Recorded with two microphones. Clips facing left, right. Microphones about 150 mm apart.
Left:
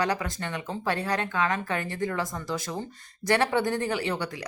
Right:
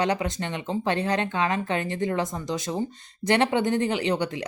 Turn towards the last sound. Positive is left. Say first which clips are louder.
# right 4 dB
turn(degrees=-20)  # may be behind; listen again after turning